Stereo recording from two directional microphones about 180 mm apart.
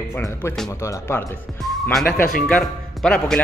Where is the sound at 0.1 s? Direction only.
15° left (ahead or behind).